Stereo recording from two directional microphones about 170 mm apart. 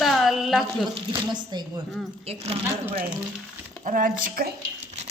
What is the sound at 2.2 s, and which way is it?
Speech, 35° right (ahead or behind).